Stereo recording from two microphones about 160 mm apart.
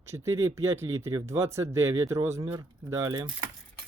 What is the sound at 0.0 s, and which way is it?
Speech, 15° right (ahead or behind).